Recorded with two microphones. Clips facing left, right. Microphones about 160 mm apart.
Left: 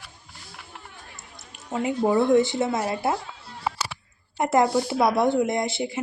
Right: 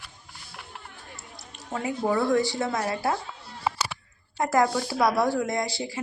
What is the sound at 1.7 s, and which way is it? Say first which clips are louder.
Speech: left 4 dB; 20° left (ahead or behind).